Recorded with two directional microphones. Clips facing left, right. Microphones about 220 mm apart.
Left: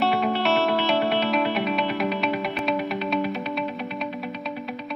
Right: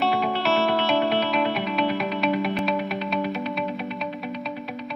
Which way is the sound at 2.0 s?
Centre (ahead or behind).